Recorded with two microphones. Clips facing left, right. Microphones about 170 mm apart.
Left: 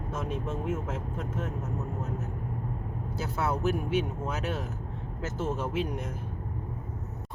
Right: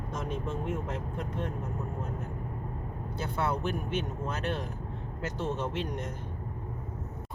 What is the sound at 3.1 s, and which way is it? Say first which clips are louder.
Speech: left 1 dB; 5° left (ahead or behind).